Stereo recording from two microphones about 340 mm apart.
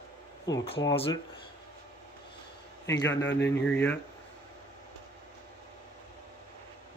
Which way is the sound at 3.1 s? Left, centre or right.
Left.